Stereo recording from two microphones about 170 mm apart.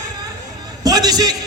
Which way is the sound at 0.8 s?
20° right (ahead or behind).